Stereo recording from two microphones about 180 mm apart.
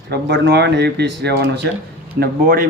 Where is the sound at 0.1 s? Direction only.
70° right (ahead or behind).